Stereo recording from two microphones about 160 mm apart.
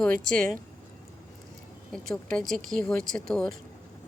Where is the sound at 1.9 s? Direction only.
5° left (ahead or behind).